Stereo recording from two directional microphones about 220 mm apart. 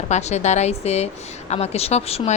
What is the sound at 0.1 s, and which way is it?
Speech, 30° left (ahead or behind).